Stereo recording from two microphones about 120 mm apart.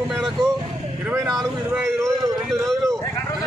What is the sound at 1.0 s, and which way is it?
Speech, 25° right (ahead or behind).